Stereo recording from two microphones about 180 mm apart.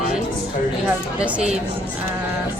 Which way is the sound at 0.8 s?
5° right (ahead or behind).